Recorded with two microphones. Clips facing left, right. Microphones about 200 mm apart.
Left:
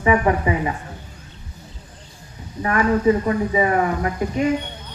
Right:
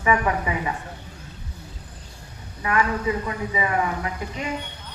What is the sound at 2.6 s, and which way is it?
A man's voice, 35° left (ahead or behind).